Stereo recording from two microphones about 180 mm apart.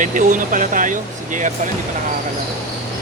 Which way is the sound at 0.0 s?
45° right (ahead or behind).